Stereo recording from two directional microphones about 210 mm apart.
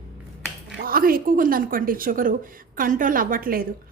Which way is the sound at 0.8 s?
45° right (ahead or behind).